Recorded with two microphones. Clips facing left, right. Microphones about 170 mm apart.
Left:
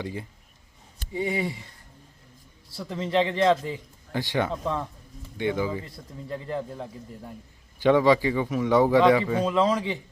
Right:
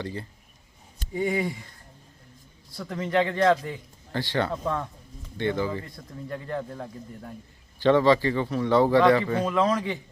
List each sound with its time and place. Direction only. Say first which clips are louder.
0.0 s speech: even; 15° left (ahead or behind)
1.3 s a man's voice: right 1 dB; 5° left (ahead or behind)
2.7 s a man's voice: even; 5° left (ahead or behind)
3.0 s a man's voice: even; 25° left (ahead or behind)
3.4 s a man's voice: right 1 dB; centre (ahead or behind)
4.1 s speech: even; 15° left (ahead or behind)
4.5 s a man's voice: even; centre (ahead or behind)
5.4 s speech: even; 10° left (ahead or behind)
5.8 s a man's voice: right 1 dB; 20° left (ahead or behind)
6.5 s a man's voice: left 1 dB; 5° left (ahead or behind)
9.0 s speech: left 1 dB; 5° left (ahead or behind)